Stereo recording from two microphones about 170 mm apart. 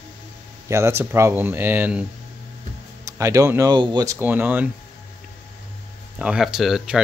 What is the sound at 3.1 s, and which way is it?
Speech, 20° right (ahead or behind).